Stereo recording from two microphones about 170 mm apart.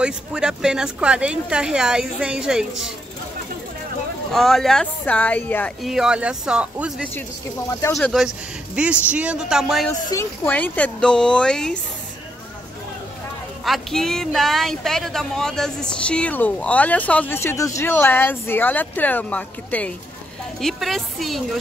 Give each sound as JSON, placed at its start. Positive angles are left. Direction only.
{"t": 0.0, "sound": "speech", "side_deg": -5}
{"t": 4.3, "sound": "speech", "side_deg": 0}
{"t": 5.8, "sound": "speech", "side_deg": 0}
{"t": 7.8, "sound": "speech", "side_deg": 15}
{"t": 8.1, "sound": "speech", "side_deg": -5}
{"t": 13.7, "sound": "speech", "side_deg": 0}